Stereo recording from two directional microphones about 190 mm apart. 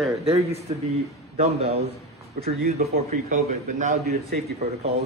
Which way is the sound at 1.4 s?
35° right (ahead or behind).